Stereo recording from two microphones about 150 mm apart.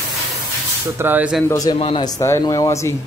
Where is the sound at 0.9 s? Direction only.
15° right (ahead or behind).